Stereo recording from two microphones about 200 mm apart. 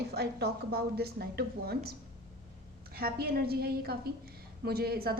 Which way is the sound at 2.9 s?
50° right (ahead or behind).